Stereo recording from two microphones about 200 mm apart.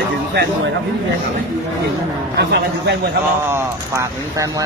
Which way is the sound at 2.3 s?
55° right (ahead or behind).